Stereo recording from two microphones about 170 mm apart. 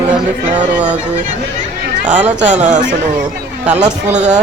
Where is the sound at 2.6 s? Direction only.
45° right (ahead or behind).